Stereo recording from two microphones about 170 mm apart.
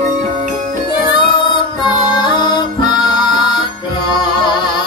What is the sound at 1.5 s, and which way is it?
Music, 30° left (ahead or behind).